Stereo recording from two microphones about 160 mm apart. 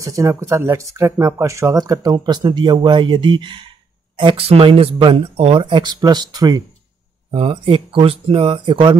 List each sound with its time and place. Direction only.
0.0 s speech: 20° right (ahead or behind)